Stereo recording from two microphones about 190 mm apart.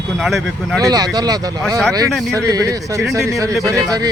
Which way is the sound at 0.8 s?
20° right (ahead or behind).